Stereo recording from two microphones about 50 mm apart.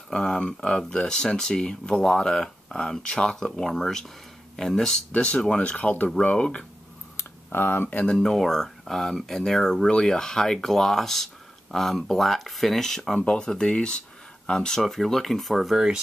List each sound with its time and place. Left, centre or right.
0.1 s speech: centre
5.1 s speech: left
7.2 s tick: left
8.2 s speech: centre
14.8 s speech: centre